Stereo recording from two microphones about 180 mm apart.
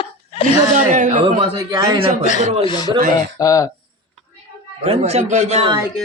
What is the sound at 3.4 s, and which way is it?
Speech, 20° left (ahead or behind).